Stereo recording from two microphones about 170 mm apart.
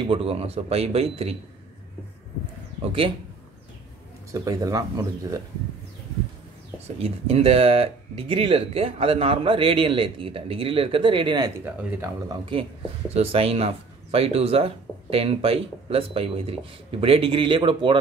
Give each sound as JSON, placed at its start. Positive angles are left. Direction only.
{"t": 0.0, "sound": "speech", "side_deg": -35}
{"t": 2.8, "sound": "a sound", "side_deg": -30}
{"t": 4.3, "sound": "speech", "side_deg": -20}
{"t": 7.0, "sound": "speech", "side_deg": -35}
{"t": 11.6, "sound": "speech", "side_deg": -15}